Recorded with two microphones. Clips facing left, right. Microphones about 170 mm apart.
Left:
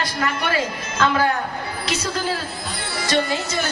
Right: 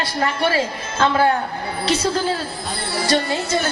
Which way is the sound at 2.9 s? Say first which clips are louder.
Right 2 dB; 30° right (ahead or behind).